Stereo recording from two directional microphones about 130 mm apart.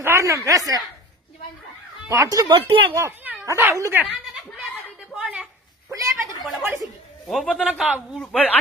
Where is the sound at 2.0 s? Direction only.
25° right (ahead or behind).